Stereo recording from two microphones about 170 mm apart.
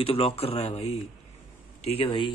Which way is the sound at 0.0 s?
35° left (ahead or behind).